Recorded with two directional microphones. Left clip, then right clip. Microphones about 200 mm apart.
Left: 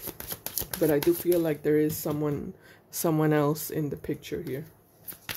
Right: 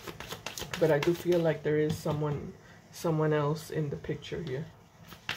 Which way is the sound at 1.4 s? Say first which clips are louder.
Left 3 dB; 60° left (ahead or behind).